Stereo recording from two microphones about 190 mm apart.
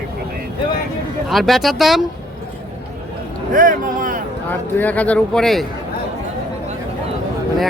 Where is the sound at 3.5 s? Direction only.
45° right (ahead or behind).